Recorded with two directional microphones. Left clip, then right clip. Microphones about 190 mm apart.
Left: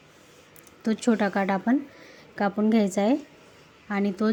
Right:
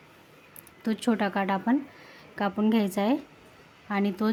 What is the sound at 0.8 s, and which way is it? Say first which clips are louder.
A woman's voice: left 3 dB; 10° left (ahead or behind).